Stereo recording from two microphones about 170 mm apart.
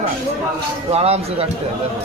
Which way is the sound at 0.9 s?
35° right (ahead or behind).